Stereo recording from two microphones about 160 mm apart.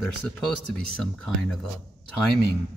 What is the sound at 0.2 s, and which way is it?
Speech, 5° left (ahead or behind).